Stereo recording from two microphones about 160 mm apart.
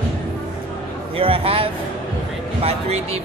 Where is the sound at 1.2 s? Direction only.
35° right (ahead or behind).